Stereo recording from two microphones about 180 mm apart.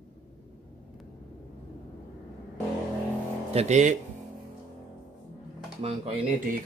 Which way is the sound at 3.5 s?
40° right (ahead or behind).